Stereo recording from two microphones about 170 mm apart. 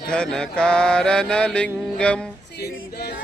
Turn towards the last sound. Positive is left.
turn(degrees=70)  # may be behind; listen again after turning